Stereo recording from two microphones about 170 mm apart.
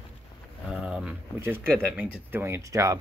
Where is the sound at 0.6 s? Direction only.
5° right (ahead or behind).